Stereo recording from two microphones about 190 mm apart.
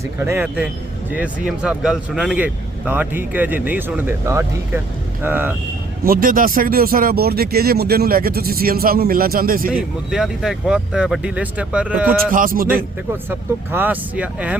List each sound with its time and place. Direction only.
0.2 s speech: 10° right (ahead or behind)
6.1 s speech: 50° right (ahead or behind)
10.1 s speech: centre (ahead or behind)
12.3 s speech: 50° right (ahead or behind)
13.7 s speech: 10° right (ahead or behind)